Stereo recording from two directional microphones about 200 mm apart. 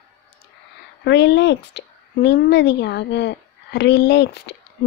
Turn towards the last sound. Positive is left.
turn(degrees=55)  # may be behind; listen again after turning